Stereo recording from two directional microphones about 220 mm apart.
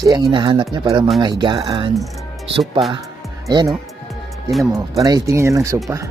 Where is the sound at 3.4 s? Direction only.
15° right (ahead or behind).